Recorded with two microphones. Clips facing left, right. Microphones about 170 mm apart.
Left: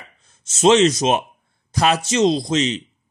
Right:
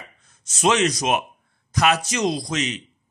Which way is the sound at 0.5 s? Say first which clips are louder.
Left 6 dB; 25° left (ahead or behind).